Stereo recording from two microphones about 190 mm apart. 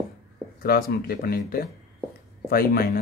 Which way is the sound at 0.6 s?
50° left (ahead or behind).